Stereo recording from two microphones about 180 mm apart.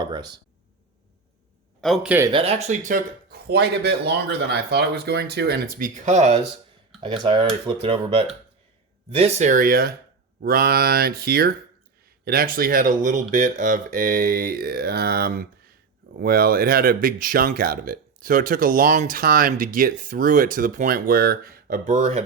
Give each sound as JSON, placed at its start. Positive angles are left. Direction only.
{"t": 0.0, "sound": "a sound", "side_deg": -25}
{"t": 1.8, "sound": "speech", "side_deg": 0}
{"t": 2.3, "sound": "speech", "side_deg": -35}
{"t": 6.1, "sound": "speech", "side_deg": -35}